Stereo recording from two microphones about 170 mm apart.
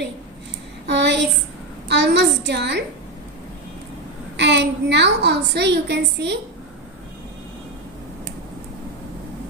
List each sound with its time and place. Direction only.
0.8 s a sound: 90° right
1.9 s a woman's voice: 85° right
4.4 s a woman's voice: 90° right